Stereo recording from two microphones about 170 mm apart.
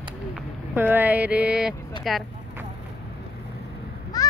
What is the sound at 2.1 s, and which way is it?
Speech, centre (ahead or behind).